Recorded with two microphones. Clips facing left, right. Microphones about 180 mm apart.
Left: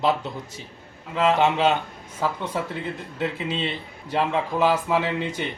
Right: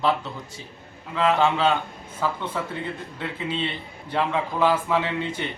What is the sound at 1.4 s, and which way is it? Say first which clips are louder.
Speech: left 1 dB; 20° left (ahead or behind).